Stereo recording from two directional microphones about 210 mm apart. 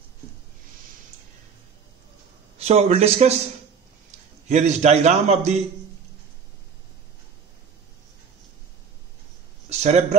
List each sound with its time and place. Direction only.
2.6 s a man's voice: 30° right (ahead or behind)
4.5 s a man's voice: 35° right (ahead or behind)
9.7 s a sound: 30° right (ahead or behind)